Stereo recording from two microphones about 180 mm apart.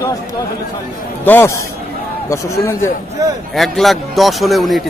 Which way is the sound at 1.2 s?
10° left (ahead or behind).